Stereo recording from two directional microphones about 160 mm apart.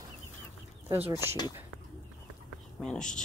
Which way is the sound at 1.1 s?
25° left (ahead or behind).